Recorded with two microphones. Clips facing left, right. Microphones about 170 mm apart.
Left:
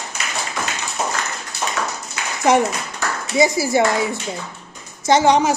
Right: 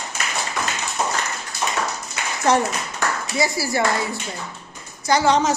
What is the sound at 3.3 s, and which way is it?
Speech, 20° left (ahead or behind).